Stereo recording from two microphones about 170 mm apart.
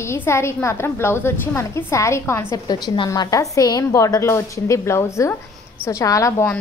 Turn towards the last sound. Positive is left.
turn(degrees=15)  # may be behind; listen again after turning